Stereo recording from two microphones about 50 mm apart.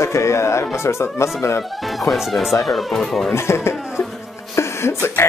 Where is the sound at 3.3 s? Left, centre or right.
Left.